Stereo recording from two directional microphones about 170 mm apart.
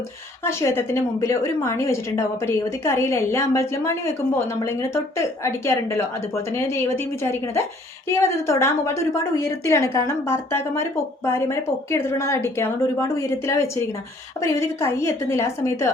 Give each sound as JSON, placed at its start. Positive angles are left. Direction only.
{"t": 0.4, "sound": "a woman's voice", "side_deg": 15}